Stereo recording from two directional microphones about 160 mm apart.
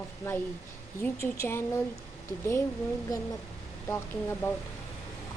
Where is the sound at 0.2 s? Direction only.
15° left (ahead or behind).